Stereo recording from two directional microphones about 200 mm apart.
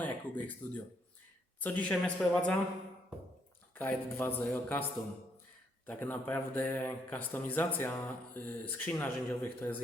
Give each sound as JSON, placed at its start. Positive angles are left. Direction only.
{"t": 0.0, "sound": "speech", "side_deg": 10}
{"t": 3.8, "sound": "speech", "side_deg": 10}